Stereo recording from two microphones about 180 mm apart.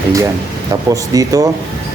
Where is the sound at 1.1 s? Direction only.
20° right (ahead or behind).